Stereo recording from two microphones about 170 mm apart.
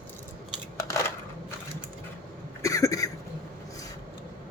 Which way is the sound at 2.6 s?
20° left (ahead or behind).